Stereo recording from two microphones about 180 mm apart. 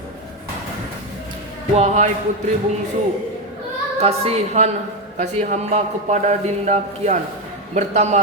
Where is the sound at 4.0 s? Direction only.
35° right (ahead or behind).